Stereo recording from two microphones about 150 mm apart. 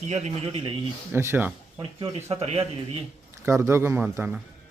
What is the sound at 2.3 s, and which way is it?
Speech, 45° right (ahead or behind).